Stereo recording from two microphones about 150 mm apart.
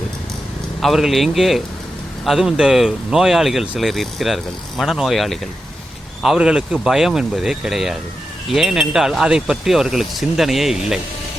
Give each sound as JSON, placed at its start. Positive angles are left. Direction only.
{"t": 0.8, "sound": "speech", "side_deg": 0}